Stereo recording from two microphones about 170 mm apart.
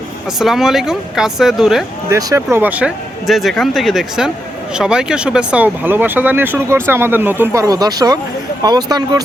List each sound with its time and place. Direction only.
0.3 s speech: centre (ahead or behind)
2.0 s speech: 15° right (ahead or behind)